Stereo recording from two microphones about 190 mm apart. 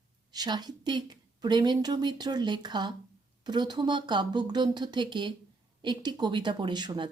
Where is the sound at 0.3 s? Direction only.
20° right (ahead or behind).